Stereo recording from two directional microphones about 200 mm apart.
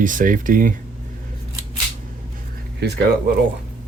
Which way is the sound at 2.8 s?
55° right (ahead or behind).